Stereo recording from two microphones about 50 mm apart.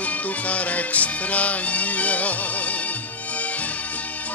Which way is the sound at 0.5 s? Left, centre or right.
Left.